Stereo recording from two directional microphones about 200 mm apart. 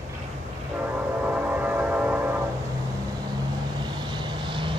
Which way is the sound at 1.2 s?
10° right (ahead or behind).